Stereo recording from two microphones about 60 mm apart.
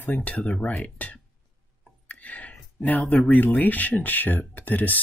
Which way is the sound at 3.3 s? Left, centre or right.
Left.